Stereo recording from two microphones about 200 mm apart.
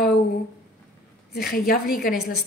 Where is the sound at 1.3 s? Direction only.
50° left (ahead or behind).